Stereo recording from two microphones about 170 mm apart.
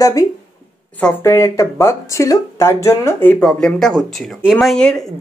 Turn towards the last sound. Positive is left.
turn(degrees=5)  # may be behind; listen again after turning